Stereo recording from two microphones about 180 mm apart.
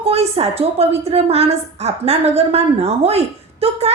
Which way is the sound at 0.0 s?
35° right (ahead or behind).